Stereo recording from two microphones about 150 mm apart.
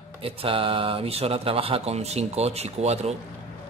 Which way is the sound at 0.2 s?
35° right (ahead or behind).